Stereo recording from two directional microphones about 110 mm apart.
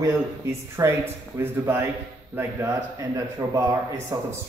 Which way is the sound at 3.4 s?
35° right (ahead or behind).